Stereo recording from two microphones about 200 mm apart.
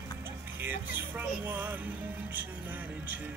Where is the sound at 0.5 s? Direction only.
10° right (ahead or behind).